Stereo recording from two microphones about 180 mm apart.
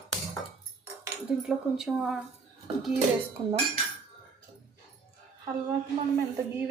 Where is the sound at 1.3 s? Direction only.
5° right (ahead or behind).